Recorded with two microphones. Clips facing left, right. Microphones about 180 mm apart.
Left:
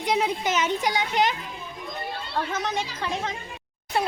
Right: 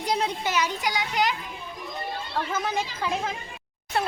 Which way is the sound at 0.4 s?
20° left (ahead or behind).